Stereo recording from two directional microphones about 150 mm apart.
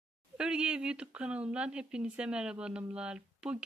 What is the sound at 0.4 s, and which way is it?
Speech, 5° right (ahead or behind).